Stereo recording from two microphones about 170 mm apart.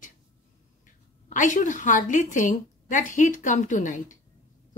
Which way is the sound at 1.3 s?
45° left (ahead or behind).